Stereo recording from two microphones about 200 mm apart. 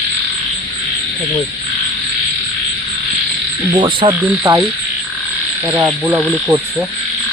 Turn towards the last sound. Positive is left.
turn(degrees=-15)  # may be behind; listen again after turning